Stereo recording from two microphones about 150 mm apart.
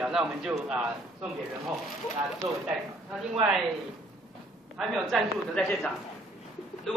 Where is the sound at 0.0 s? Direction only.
5° right (ahead or behind).